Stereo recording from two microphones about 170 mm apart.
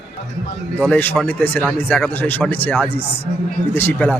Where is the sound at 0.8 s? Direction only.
10° left (ahead or behind).